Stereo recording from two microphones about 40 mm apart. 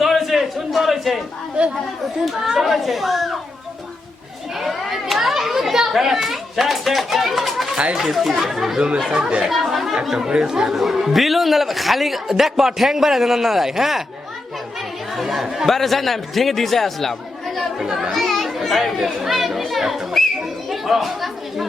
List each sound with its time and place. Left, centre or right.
0.0 s a sound: centre
2.2 s a man's voice: centre
4.5 s children playing: centre
7.9 s a man's voice: centre
9.4 s chatter: centre
10.2 s a man's voice: right
15.1 s a man's voice: centre